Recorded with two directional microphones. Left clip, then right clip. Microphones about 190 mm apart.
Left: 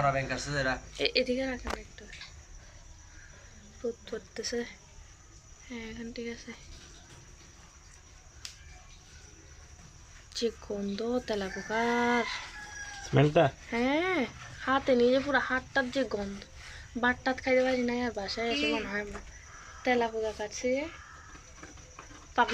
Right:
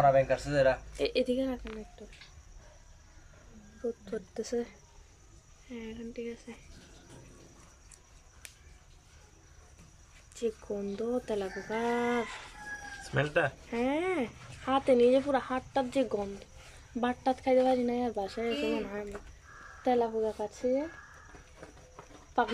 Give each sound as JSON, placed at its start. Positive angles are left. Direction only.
{"t": 0.0, "sound": "speech", "side_deg": -40}
{"t": 0.9, "sound": "speech", "side_deg": -15}
{"t": 3.8, "sound": "speech", "side_deg": -5}
{"t": 10.4, "sound": "speech", "side_deg": -5}
{"t": 13.1, "sound": "speech", "side_deg": 20}
{"t": 13.7, "sound": "speech", "side_deg": -5}
{"t": 19.8, "sound": "a woman's voice", "side_deg": -20}
{"t": 22.4, "sound": "a woman's voice", "side_deg": -20}